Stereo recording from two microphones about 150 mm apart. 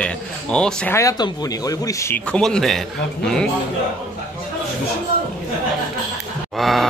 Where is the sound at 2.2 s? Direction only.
5° left (ahead or behind).